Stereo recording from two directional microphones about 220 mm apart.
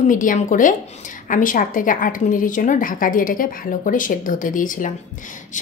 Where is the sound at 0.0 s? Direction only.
35° left (ahead or behind).